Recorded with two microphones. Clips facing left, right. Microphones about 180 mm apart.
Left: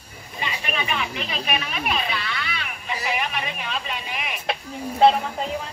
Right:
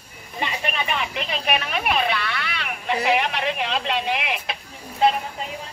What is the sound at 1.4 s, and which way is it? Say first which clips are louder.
A woman's voice: right 4 dB; 60° right (ahead or behind).